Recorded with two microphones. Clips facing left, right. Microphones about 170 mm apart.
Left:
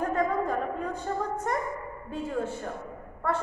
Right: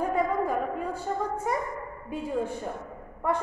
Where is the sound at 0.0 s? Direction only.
10° right (ahead or behind).